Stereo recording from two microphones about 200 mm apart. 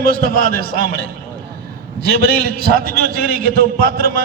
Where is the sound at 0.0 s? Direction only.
45° right (ahead or behind).